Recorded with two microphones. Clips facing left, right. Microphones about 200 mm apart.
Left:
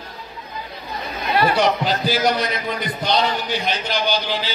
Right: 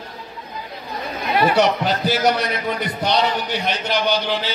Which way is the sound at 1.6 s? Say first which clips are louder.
Right 1 dB; 65° right (ahead or behind).